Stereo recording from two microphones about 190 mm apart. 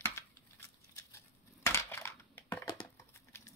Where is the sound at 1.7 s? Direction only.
15° left (ahead or behind).